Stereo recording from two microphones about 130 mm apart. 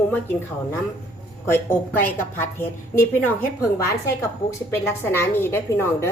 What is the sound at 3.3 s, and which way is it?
A woman's voice, 15° left (ahead or behind).